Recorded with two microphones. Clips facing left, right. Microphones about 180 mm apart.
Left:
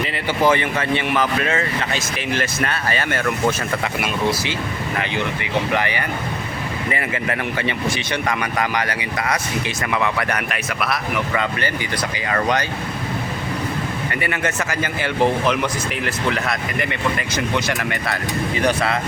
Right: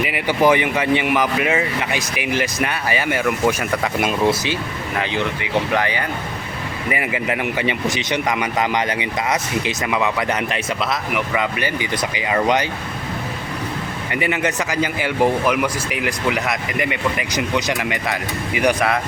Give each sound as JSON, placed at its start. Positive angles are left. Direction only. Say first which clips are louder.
{"t": 0.0, "sound": "speech", "louder": "right 2 dB", "side_deg": -15}
{"t": 4.9, "sound": "speech", "louder": "right 3 dB", "side_deg": -15}
{"t": 14.1, "sound": "speech", "louder": "right 5 dB", "side_deg": -20}